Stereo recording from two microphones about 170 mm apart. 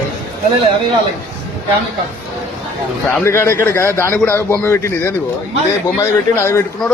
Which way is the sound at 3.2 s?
15° left (ahead or behind).